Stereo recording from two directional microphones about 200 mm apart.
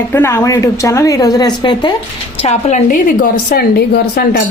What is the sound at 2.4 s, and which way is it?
A woman's voice, 35° left (ahead or behind).